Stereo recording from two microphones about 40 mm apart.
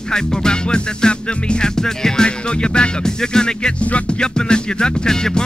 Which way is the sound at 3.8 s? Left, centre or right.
Left.